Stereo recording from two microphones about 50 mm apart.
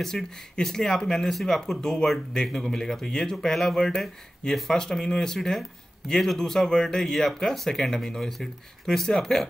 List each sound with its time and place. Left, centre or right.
0.0 s speech: centre